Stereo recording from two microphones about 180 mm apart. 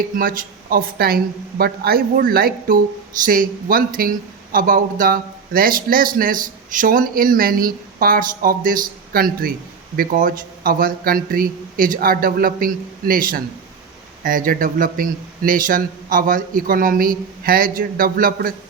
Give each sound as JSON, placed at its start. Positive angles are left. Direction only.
{"t": 0.0, "sound": "a man's voice", "side_deg": -50}